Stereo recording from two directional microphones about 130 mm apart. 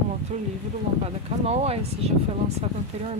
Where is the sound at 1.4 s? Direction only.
55° right (ahead or behind).